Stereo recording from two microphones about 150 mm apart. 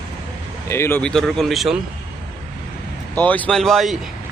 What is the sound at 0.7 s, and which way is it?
Speech, 15° left (ahead or behind).